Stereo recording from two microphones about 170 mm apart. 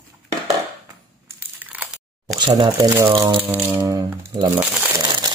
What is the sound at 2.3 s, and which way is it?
Speech, 25° right (ahead or behind).